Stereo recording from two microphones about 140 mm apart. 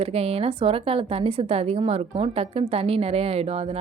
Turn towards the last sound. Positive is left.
turn(degrees=-45)  # may be behind; listen again after turning